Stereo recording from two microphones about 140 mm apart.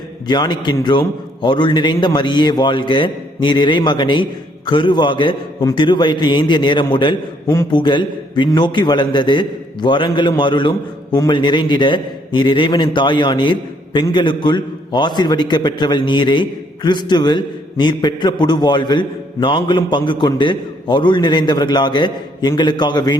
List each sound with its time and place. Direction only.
0.3 s a man's voice: 30° left (ahead or behind)
7.4 s a man's voice: 20° left (ahead or behind)
7.7 s a man's voice: 35° left (ahead or behind)